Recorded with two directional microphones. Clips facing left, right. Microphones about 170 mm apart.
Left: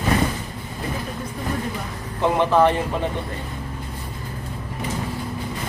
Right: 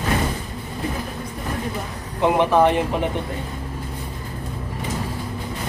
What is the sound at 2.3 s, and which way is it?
Speech, 15° right (ahead or behind).